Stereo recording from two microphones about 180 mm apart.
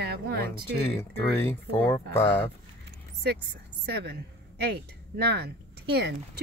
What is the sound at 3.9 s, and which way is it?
Speech, 65° right (ahead or behind).